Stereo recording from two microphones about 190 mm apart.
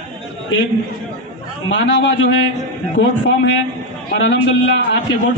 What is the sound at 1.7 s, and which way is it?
Speech, 75° left (ahead or behind).